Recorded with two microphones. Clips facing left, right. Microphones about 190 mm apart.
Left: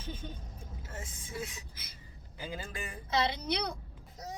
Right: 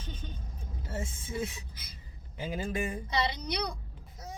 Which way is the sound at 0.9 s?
25° right (ahead or behind).